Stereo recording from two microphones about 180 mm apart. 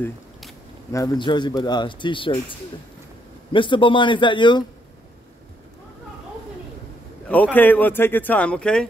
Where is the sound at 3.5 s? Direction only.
25° left (ahead or behind).